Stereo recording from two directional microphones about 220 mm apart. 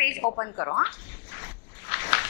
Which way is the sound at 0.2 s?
25° left (ahead or behind).